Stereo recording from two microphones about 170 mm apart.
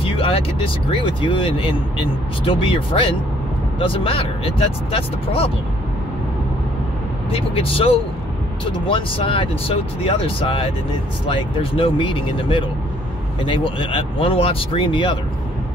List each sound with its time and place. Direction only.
0.0 s speech: 35° left (ahead or behind)
7.2 s speech: 35° left (ahead or behind)